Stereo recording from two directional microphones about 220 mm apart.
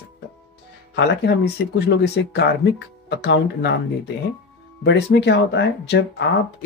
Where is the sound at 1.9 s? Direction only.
50° left (ahead or behind).